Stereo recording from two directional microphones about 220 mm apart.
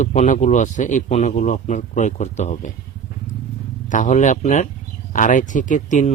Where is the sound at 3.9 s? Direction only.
35° left (ahead or behind).